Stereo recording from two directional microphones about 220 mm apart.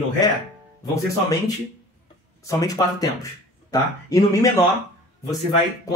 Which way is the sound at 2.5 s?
15° left (ahead or behind).